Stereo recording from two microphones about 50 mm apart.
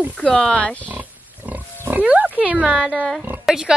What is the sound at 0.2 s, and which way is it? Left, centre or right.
Speech, left.